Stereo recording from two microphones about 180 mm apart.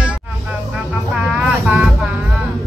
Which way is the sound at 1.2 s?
5° right (ahead or behind).